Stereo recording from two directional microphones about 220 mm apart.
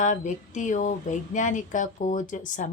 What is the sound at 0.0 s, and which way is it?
Speech, 35° left (ahead or behind).